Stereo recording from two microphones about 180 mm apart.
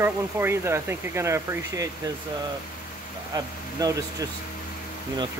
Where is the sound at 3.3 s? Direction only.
20° right (ahead or behind).